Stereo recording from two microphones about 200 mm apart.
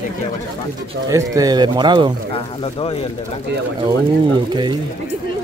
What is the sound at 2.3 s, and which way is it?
Speech, 25° left (ahead or behind).